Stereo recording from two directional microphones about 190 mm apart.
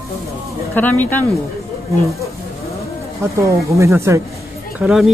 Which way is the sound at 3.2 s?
15° right (ahead or behind).